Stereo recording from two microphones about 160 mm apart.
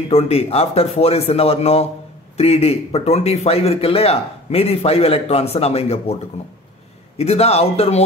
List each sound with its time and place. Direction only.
0.1 s speech: 40° left (ahead or behind)
7.2 s speech: 40° left (ahead or behind)